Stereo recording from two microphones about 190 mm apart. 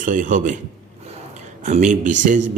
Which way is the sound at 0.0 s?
40° right (ahead or behind).